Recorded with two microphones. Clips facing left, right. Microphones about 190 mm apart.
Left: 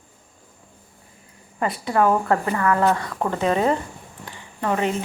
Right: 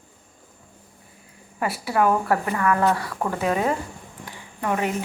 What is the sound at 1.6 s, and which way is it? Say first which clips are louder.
A woman's voice: left 2 dB; 10° right (ahead or behind).